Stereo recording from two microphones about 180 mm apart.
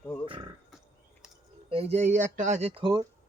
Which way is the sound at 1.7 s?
35° right (ahead or behind).